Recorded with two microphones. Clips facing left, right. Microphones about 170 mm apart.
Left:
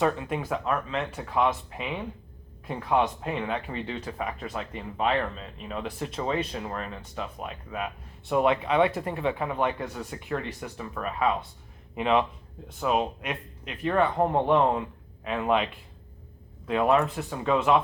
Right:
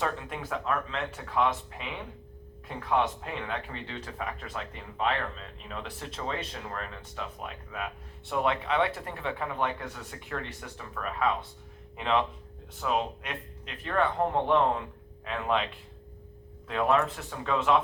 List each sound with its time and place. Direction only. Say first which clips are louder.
0.0 s speech: left 6 dB; 15° left (ahead or behind)
16.6 s speech: left 3 dB; 15° left (ahead or behind)